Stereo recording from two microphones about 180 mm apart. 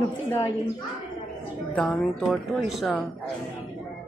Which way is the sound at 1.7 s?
5° left (ahead or behind).